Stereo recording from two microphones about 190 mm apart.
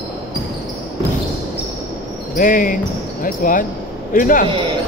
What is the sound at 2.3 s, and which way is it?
A man's voice, 45° left (ahead or behind).